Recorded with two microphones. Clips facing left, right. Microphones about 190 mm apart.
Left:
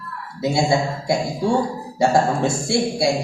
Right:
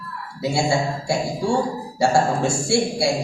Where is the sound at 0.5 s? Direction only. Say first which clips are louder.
Left 1 dB; 20° left (ahead or behind).